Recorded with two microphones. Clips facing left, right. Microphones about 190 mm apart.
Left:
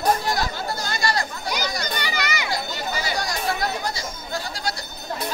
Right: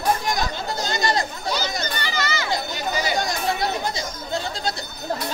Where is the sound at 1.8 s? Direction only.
15° left (ahead or behind).